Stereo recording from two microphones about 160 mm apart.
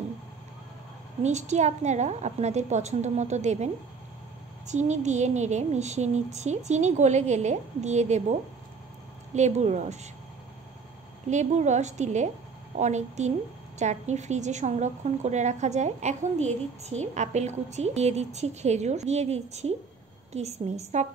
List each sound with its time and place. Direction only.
1.2 s a woman's voice: 45° right (ahead or behind)
11.2 s a woman's voice: 45° right (ahead or behind)